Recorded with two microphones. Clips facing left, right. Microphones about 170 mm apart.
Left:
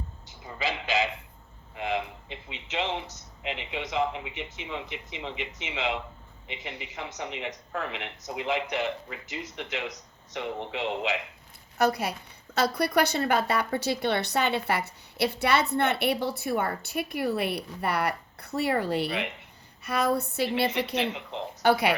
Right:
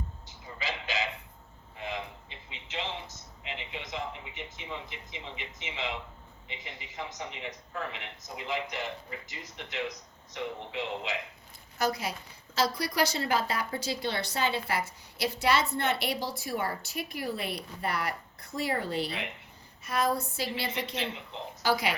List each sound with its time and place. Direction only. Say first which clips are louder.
0.6 s a sound: left 6 dB; 70° left (ahead or behind)
2.5 s speech: left 6 dB; 75° left (ahead or behind)
3.4 s a man's voice: left 7 dB; 90° left
11.8 s speech: left 5 dB; 60° left (ahead or behind)